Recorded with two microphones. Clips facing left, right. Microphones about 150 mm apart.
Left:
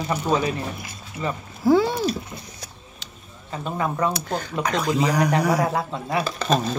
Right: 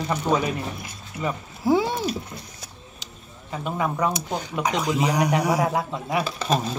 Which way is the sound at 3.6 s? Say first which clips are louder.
Even; 10° right (ahead or behind).